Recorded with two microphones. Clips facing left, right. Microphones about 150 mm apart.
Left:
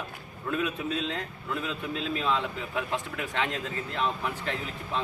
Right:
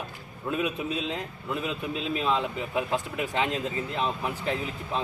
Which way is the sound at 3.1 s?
25° right (ahead or behind).